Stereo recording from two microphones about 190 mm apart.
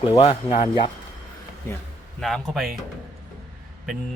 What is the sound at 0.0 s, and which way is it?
Speech, 30° left (ahead or behind).